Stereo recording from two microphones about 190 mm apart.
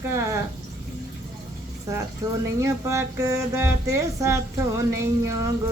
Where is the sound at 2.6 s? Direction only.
15° right (ahead or behind).